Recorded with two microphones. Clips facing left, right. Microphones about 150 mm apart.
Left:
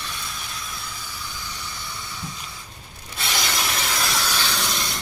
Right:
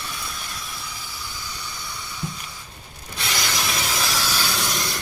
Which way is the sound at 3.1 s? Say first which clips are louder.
Even; centre (ahead or behind).